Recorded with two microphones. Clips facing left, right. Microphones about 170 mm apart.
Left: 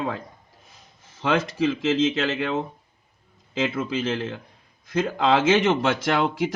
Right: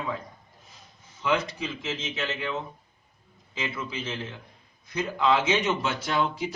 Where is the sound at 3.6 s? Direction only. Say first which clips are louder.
Left 8 dB; 50° left (ahead or behind).